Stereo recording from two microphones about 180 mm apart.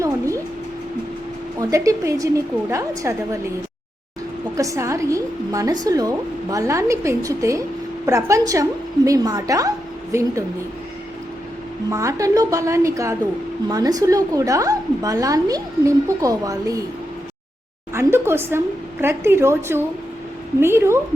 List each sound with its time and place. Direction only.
1.7 s a woman's voice: 15° right (ahead or behind)
4.5 s a woman's voice: 20° right (ahead or behind)
11.9 s a woman's voice: 15° right (ahead or behind)
17.9 s a woman's voice: 15° right (ahead or behind)